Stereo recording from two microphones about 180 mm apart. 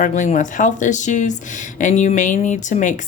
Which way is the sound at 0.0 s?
45° left (ahead or behind).